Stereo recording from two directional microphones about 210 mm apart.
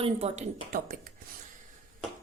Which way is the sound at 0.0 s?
30° right (ahead or behind).